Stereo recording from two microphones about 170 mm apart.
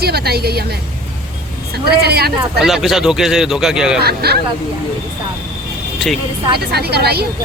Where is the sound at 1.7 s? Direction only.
70° right (ahead or behind).